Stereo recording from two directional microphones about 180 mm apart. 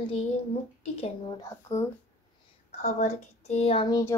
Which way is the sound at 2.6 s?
40° left (ahead or behind).